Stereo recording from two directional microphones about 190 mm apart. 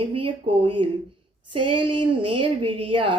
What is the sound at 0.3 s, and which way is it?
A woman's voice, 25° right (ahead or behind).